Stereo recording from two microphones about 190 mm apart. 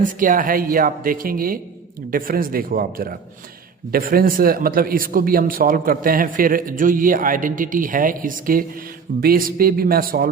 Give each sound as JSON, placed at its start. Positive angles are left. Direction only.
{"t": 0.0, "sound": "speech", "side_deg": -45}